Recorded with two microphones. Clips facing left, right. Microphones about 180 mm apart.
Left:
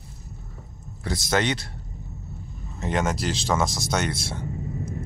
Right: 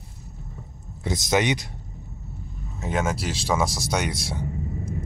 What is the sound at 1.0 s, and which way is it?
Speech, 20° right (ahead or behind).